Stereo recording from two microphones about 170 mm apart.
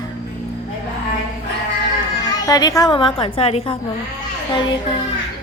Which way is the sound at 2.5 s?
20° left (ahead or behind).